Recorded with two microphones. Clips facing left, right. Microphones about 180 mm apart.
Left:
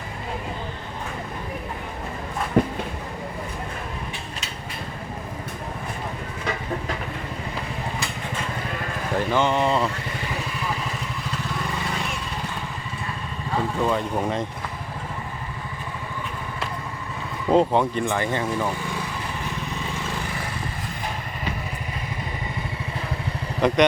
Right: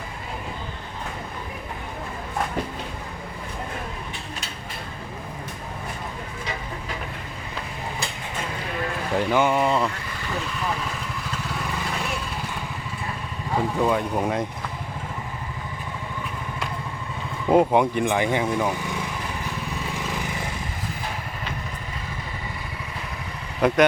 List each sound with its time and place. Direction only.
2.6 s speech: 55° left (ahead or behind)
9.1 s speech: 10° right (ahead or behind)
13.7 s speech: 10° right (ahead or behind)
17.5 s speech: 10° right (ahead or behind)
20.0 s vehicle: 15° right (ahead or behind)
23.6 s speech: 5° right (ahead or behind)